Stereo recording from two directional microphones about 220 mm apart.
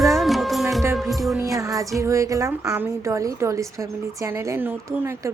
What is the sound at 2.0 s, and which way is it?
A woman's voice, 15° right (ahead or behind).